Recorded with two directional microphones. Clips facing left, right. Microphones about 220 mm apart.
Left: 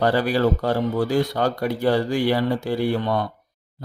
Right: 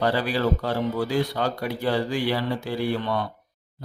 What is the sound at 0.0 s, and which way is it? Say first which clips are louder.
Mantra: left 4 dB; 45° left (ahead or behind).